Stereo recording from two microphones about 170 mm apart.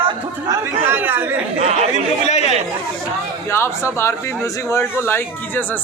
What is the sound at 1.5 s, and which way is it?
Speech, 40° right (ahead or behind).